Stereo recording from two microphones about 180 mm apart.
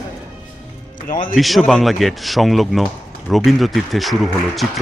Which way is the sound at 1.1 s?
50° left (ahead or behind).